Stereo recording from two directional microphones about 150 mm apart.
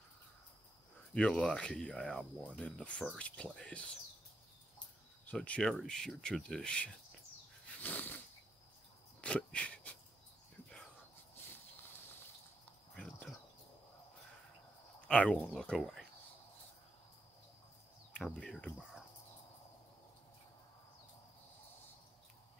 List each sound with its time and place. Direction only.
1.1 s speech: 5° left (ahead or behind)
5.2 s speech: 10° left (ahead or behind)
7.8 s a sound: 10° left (ahead or behind)
9.2 s speech: 5° left (ahead or behind)
12.9 s a sound: 5° left (ahead or behind)
15.0 s speech: 5° left (ahead or behind)
18.1 s speech: 5° left (ahead or behind)